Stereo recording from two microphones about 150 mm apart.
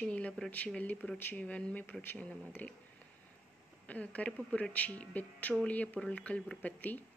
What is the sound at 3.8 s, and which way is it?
Speech, 10° left (ahead or behind).